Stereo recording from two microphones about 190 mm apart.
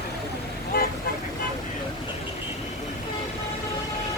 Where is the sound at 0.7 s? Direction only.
50° left (ahead or behind).